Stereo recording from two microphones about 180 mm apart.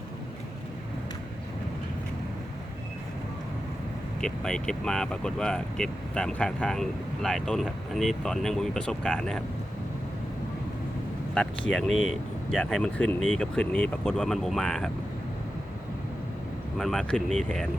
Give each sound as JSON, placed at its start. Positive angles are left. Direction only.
{"t": 4.2, "sound": "speech", "side_deg": 5}
{"t": 11.9, "sound": "speech", "side_deg": -35}
{"t": 12.5, "sound": "speech", "side_deg": 5}
{"t": 13.1, "sound": "speech", "side_deg": -40}
{"t": 13.4, "sound": "speech", "side_deg": 5}
{"t": 16.7, "sound": "speech", "side_deg": 0}